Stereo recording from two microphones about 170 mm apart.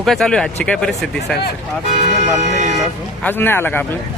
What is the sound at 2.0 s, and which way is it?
Speech, 40° right (ahead or behind).